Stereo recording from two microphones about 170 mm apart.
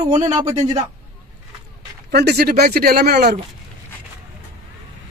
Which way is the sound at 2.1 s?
70° right (ahead or behind).